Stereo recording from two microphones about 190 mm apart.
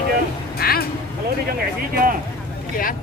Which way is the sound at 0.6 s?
55° left (ahead or behind).